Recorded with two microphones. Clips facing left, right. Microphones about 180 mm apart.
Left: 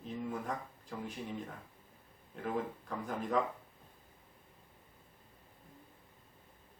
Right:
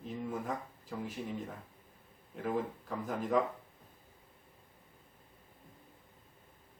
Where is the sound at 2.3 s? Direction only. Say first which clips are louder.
Right 2 dB; centre (ahead or behind).